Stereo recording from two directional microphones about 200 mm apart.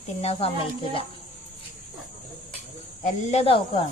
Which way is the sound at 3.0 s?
30° left (ahead or behind).